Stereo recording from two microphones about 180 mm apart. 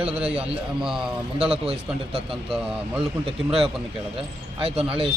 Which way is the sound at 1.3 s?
30° right (ahead or behind).